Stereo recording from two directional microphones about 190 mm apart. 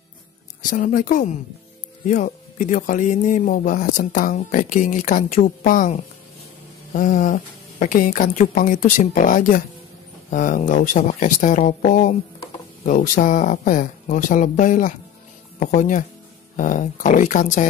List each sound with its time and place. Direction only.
0.7 s speech: 45° left (ahead or behind)